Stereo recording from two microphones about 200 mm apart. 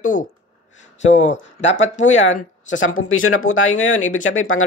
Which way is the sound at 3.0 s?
90° left.